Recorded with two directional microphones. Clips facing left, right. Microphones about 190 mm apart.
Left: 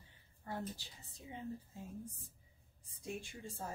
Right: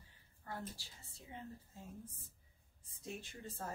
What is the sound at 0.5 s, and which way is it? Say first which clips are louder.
Speech: left 4 dB; 20° left (ahead or behind).